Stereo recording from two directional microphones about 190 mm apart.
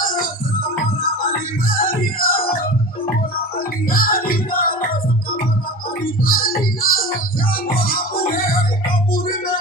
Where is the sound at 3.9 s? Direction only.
50° left (ahead or behind).